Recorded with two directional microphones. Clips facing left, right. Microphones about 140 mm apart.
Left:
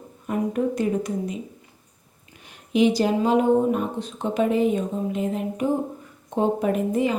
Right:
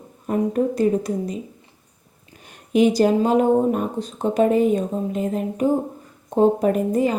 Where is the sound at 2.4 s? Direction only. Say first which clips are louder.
Right 2 dB; 45° right (ahead or behind).